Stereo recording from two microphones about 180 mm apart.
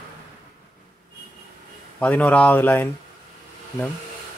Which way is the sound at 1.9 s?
10° left (ahead or behind).